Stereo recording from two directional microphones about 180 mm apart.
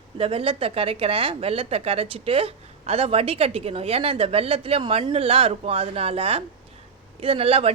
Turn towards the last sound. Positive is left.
turn(degrees=-30)  # may be behind; listen again after turning